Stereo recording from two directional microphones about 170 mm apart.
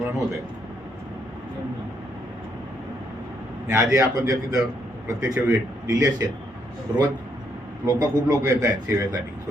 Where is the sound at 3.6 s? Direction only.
15° right (ahead or behind).